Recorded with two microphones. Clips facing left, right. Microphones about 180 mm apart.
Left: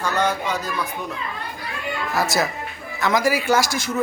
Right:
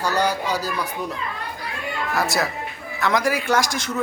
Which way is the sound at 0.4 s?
35° right (ahead or behind).